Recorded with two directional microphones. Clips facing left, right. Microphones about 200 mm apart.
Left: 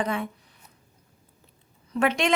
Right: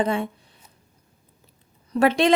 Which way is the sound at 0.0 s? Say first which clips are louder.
Right 5 dB; 30° right (ahead or behind).